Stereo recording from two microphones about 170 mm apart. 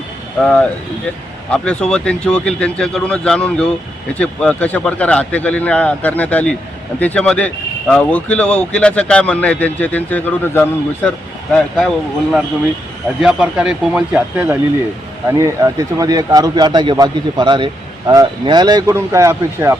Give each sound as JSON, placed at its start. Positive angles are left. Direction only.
{"t": 0.4, "sound": "speech", "side_deg": 10}
{"t": 15.3, "sound": "speech", "side_deg": -20}